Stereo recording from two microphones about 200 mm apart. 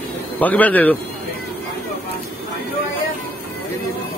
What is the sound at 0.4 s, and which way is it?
Speech, 10° left (ahead or behind).